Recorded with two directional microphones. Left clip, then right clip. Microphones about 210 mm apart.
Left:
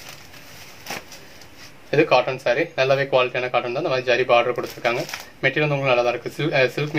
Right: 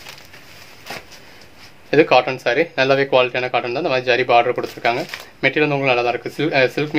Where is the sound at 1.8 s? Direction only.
50° right (ahead or behind).